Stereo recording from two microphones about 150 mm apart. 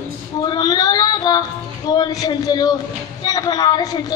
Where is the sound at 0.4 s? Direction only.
25° left (ahead or behind).